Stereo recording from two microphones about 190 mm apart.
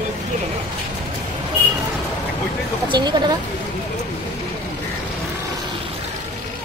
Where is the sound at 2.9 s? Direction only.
25° right (ahead or behind).